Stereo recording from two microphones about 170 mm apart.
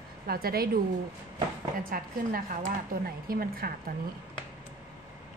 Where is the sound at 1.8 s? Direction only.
55° right (ahead or behind).